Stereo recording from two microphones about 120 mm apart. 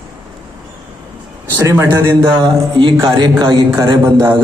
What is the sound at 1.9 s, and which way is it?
Speech, 20° right (ahead or behind).